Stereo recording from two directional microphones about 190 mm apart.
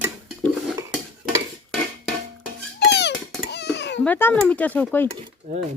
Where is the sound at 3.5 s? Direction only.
65° left (ahead or behind).